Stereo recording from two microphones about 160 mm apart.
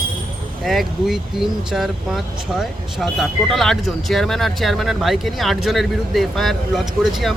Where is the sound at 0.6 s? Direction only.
Centre (ahead or behind).